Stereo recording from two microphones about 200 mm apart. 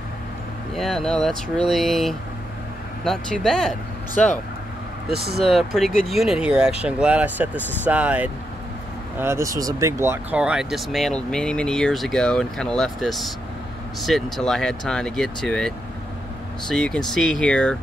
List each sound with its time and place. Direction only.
0.7 s speech: centre (ahead or behind)
5.1 s speech: 55° right (ahead or behind)
5.4 s speech: centre (ahead or behind)